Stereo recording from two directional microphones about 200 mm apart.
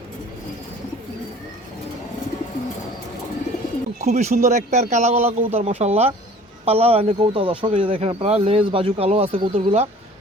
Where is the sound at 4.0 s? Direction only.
35° right (ahead or behind).